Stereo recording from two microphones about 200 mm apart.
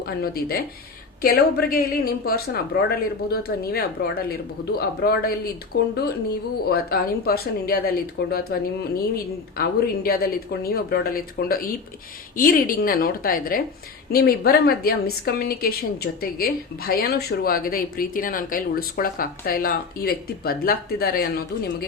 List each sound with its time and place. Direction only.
0.0 s a woman's voice: 50° left (ahead or behind)